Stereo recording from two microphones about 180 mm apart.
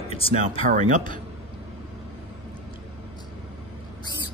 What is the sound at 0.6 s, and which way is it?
Speech, 40° right (ahead or behind).